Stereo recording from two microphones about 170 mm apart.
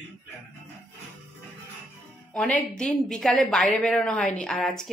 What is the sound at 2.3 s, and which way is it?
A woman's voice, 5° left (ahead or behind).